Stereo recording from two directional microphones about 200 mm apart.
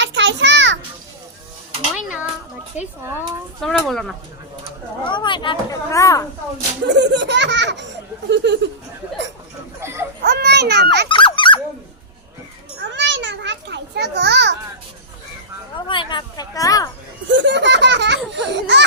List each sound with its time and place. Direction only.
0.0 s a sound: 65° right (ahead or behind)
2.8 s speech: 35° left (ahead or behind)
3.6 s speech: centre (ahead or behind)
5.0 s speech: 25° left (ahead or behind)
6.8 s speech: 60° right (ahead or behind)
9.8 s baby cry: 15° right (ahead or behind)
10.2 s children playing: 55° right (ahead or behind)
11.1 s squeak: 25° left (ahead or behind)
12.8 s children playing: 65° right (ahead or behind)
15.9 s a sound: 25° left (ahead or behind)
17.3 s baby laughter: 60° right (ahead or behind)
18.3 s laughter: 60° right (ahead or behind)